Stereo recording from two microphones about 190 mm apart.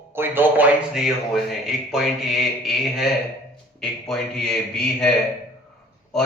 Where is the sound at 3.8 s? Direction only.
5° left (ahead or behind).